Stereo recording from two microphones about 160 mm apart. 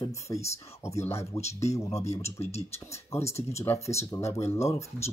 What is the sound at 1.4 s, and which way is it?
Speech, 40° left (ahead or behind).